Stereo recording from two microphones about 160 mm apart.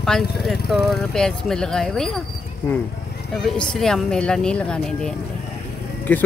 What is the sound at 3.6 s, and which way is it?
Speech, 5° left (ahead or behind).